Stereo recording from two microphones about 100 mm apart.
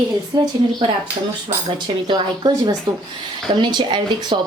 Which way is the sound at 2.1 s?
45° right (ahead or behind).